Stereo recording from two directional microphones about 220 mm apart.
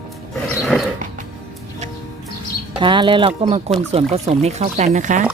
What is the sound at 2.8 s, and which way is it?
Speech, 20° right (ahead or behind).